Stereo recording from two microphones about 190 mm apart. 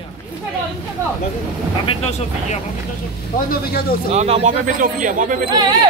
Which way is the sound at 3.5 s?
55° left (ahead or behind).